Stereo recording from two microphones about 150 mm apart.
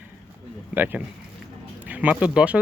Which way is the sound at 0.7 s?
10° right (ahead or behind).